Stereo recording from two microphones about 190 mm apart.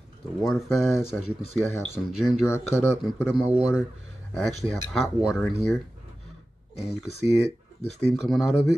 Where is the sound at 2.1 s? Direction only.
5° right (ahead or behind).